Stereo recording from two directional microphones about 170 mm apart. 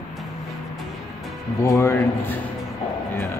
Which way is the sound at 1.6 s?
15° left (ahead or behind).